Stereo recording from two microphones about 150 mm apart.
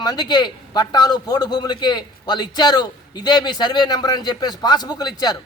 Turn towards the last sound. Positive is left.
turn(degrees=25)  # may be behind; listen again after turning